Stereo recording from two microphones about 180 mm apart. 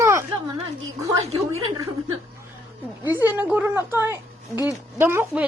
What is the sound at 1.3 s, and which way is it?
Speech, 35° right (ahead or behind).